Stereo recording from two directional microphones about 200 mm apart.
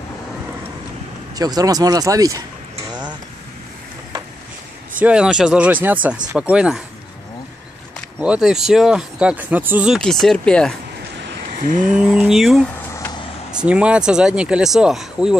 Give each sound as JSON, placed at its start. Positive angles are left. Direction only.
{"t": 1.3, "sound": "speech", "side_deg": -20}
{"t": 4.9, "sound": "speech", "side_deg": -5}
{"t": 8.2, "sound": "speech", "side_deg": -5}
{"t": 11.1, "sound": "a sound", "side_deg": -60}
{"t": 11.6, "sound": "a sound", "side_deg": -40}
{"t": 11.9, "sound": "speech", "side_deg": -5}
{"t": 12.9, "sound": "vehicle", "side_deg": 15}
{"t": 13.5, "sound": "speech", "side_deg": -5}